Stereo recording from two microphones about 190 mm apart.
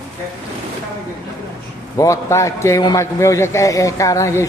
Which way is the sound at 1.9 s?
15° left (ahead or behind).